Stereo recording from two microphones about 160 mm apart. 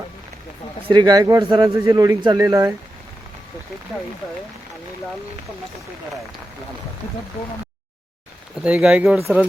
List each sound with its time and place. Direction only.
0.9 s a man's voice: 25° right (ahead or behind)
8.5 s speech: 5° right (ahead or behind)